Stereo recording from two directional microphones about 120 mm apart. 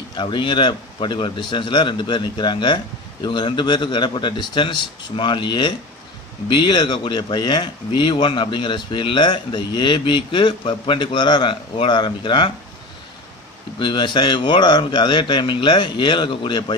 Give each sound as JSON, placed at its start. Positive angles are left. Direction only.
{"t": 0.1, "sound": "speech", "side_deg": 40}
{"t": 13.7, "sound": "speech", "side_deg": 40}